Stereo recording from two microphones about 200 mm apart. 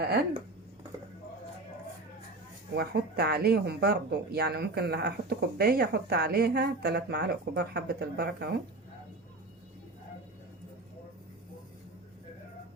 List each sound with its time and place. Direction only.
2.7 s speech: 55° right (ahead or behind)